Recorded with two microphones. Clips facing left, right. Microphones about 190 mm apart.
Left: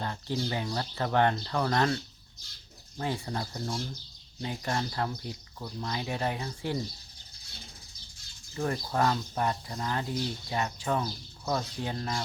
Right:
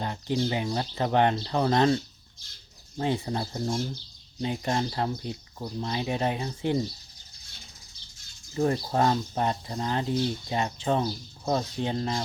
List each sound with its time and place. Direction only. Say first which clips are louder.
0.0 s speech: right 5 dB; 20° right (ahead or behind)
3.0 s speech: right 5 dB; 20° right (ahead or behind)
8.5 s speech: right 5 dB; 30° right (ahead or behind)